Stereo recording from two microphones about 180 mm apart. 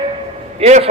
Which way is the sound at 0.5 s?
35° right (ahead or behind).